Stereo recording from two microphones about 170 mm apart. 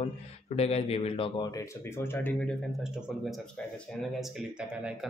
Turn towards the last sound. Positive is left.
turn(degrees=-5)  # may be behind; listen again after turning